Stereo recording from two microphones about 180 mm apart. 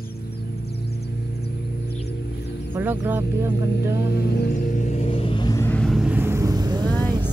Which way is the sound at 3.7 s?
65° left (ahead or behind).